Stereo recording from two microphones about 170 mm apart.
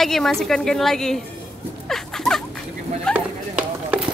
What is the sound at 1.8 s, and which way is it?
Music, centre (ahead or behind).